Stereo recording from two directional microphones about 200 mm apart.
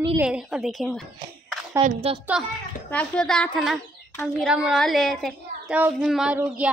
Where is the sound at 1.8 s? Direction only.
35° right (ahead or behind).